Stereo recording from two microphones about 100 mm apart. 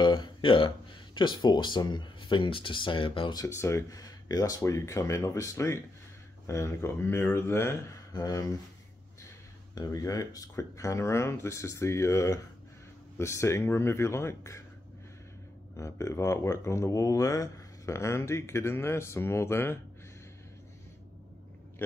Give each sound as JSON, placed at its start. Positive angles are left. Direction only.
{"t": 0.0, "sound": "speech", "side_deg": 50}
{"t": 3.3, "sound": "speech", "side_deg": 30}
{"t": 8.1, "sound": "speech", "side_deg": 40}
{"t": 9.8, "sound": "speech", "side_deg": 35}
{"t": 15.7, "sound": "speech", "side_deg": 30}